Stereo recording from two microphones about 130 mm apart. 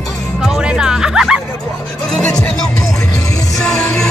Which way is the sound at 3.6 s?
5° left (ahead or behind).